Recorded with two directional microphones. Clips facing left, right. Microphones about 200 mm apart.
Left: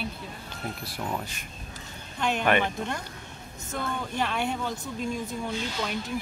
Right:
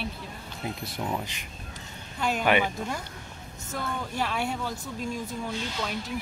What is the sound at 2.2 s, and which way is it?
Speech, 5° right (ahead or behind).